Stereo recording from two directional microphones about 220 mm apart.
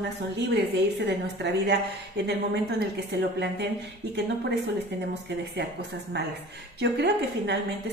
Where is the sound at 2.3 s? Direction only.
45° right (ahead or behind).